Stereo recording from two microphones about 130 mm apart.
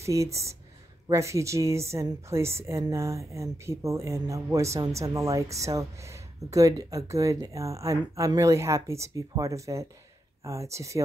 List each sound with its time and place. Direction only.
0.0 s a woman's voice: 25° right (ahead or behind)